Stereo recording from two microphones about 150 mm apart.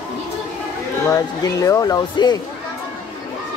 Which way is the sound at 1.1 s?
20° left (ahead or behind).